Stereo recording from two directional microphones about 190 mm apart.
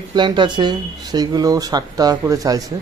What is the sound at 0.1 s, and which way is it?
Speech, 25° right (ahead or behind).